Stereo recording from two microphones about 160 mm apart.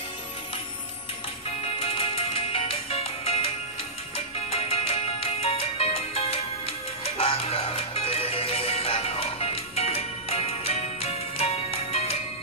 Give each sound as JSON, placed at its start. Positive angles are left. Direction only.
{"t": 1.8, "sound": "music", "side_deg": 35}